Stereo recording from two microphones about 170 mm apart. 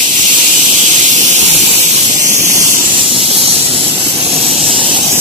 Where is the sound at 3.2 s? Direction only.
35° right (ahead or behind).